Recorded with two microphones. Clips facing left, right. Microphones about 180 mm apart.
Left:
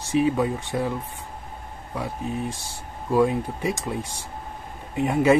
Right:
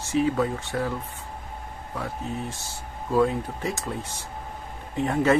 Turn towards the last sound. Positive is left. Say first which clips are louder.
# left 3 dB
turn(degrees=10)  # may be behind; listen again after turning